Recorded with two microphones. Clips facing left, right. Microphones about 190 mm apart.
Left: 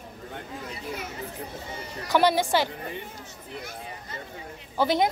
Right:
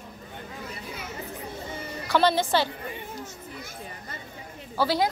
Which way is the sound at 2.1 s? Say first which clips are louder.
Left 1 dB; 15° left (ahead or behind).